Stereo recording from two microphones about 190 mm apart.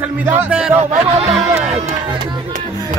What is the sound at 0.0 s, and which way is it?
Speech, 10° right (ahead or behind).